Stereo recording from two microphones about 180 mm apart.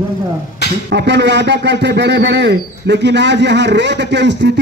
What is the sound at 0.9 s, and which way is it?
A man's voice, 75° right (ahead or behind).